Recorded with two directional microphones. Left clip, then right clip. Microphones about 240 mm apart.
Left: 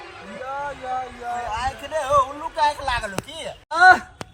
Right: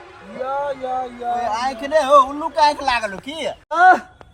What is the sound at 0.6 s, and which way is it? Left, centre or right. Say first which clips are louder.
Speech: right 2 dB; right.